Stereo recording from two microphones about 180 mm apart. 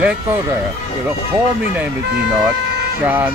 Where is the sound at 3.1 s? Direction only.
10° right (ahead or behind).